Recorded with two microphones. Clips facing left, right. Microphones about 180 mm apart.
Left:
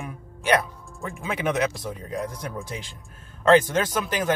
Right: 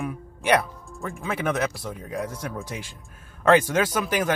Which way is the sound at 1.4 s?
15° left (ahead or behind).